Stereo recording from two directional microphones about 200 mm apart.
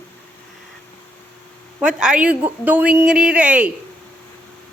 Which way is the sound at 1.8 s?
5° right (ahead or behind).